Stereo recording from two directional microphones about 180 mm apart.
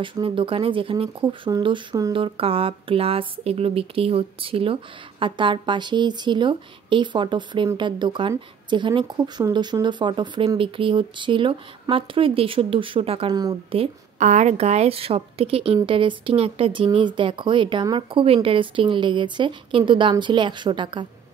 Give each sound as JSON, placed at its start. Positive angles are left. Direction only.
{"t": 0.0, "sound": "a woman's voice", "side_deg": -30}